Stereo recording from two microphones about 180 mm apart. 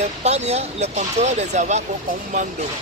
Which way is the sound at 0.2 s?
35° right (ahead or behind).